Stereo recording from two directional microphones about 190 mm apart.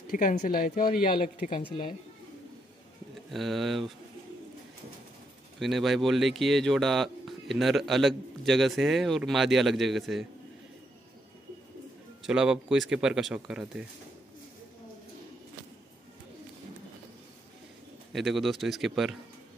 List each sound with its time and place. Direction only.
0.1 s speech: 45° left (ahead or behind)
3.3 s speech: centre (ahead or behind)
5.6 s speech: centre (ahead or behind)
12.2 s speech: 5° right (ahead or behind)
18.1 s speech: centre (ahead or behind)